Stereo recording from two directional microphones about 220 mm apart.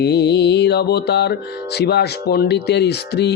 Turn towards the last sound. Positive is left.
turn(degrees=50)  # may be behind; listen again after turning